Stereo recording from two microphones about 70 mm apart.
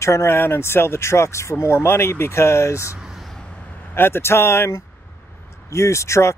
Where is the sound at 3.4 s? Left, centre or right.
Left.